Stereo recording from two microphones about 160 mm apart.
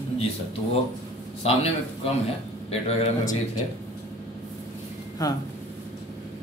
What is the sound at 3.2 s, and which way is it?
Speech, 20° left (ahead or behind).